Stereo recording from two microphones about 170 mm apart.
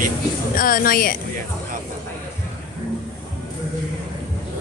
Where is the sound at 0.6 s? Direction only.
55° left (ahead or behind).